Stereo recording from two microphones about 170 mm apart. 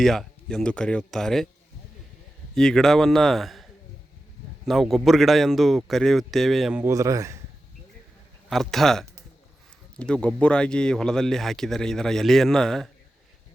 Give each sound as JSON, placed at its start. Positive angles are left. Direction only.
{"t": 0.0, "sound": "speech", "side_deg": 0}
{"t": 2.6, "sound": "speech", "side_deg": 5}
{"t": 6.8, "sound": "speech", "side_deg": -20}
{"t": 8.4, "sound": "speech", "side_deg": 0}